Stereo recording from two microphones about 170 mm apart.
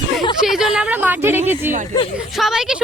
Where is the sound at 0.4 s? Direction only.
5° right (ahead or behind).